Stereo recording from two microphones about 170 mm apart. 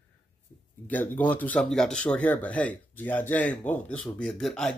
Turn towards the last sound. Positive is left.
turn(degrees=0)  # may be behind; listen again after turning